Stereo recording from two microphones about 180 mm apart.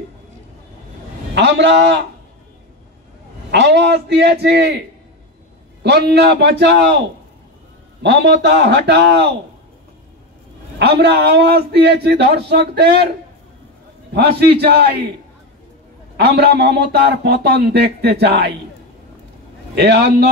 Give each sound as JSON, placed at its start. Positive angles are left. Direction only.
{"t": 1.3, "sound": "a man's voice", "side_deg": -75}
{"t": 3.5, "sound": "a man's voice", "side_deg": -70}
{"t": 8.0, "sound": "a man's voice", "side_deg": -70}
{"t": 10.8, "sound": "a man's voice", "side_deg": -65}
{"t": 14.1, "sound": "a man's voice", "side_deg": -65}
{"t": 16.2, "sound": "a man's voice", "side_deg": -60}
{"t": 19.7, "sound": "a man's voice", "side_deg": -65}